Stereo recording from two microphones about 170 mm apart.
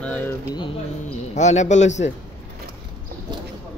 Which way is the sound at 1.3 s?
45° left (ahead or behind).